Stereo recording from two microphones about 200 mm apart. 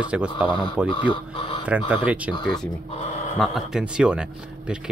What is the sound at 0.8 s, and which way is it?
Speech, 25° left (ahead or behind).